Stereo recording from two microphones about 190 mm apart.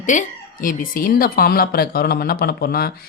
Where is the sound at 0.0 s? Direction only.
40° left (ahead or behind).